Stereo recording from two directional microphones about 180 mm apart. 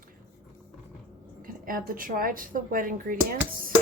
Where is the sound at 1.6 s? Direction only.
50° right (ahead or behind).